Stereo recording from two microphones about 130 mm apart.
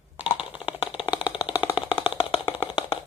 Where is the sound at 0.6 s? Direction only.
45° left (ahead or behind).